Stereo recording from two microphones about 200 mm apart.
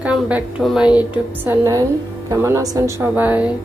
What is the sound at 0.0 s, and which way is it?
A woman's voice, 5° right (ahead or behind).